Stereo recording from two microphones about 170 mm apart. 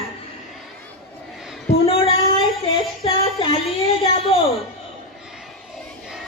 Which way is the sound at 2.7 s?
30° left (ahead or behind).